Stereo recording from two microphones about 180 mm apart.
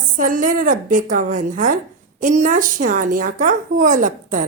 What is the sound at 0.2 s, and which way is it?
A woman's voice, 50° right (ahead or behind).